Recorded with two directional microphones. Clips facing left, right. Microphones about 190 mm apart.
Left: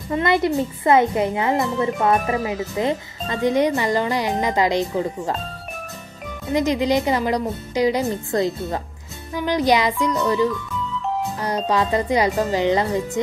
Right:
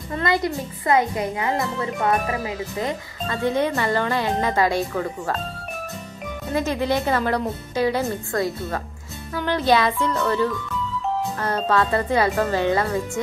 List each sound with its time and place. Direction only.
0.1 s speech: 20° left (ahead or behind)
6.5 s a woman's voice: 15° left (ahead or behind)